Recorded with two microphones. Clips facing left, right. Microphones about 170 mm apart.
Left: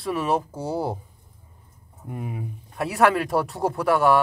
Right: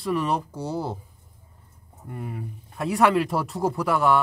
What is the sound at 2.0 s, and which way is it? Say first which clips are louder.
Speech: left 2 dB; 15° left (ahead or behind).